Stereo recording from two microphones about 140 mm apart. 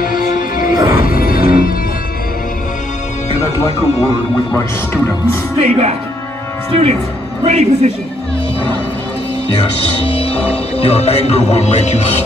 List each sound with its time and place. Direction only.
0.0 s music: 85° left
0.7 s music: 20° right (ahead or behind)
1.0 s music: 90° left
3.3 s music: 50° left (ahead or behind)
4.6 s speech: 15° left (ahead or behind)
5.6 s a man's voice: 50° right (ahead or behind)
10.0 s music: 40° left (ahead or behind)